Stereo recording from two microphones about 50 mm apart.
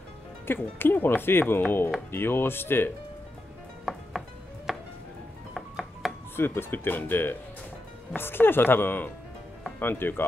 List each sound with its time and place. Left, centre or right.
0.5 s speech: left
3.9 s music: centre
6.3 s speech: left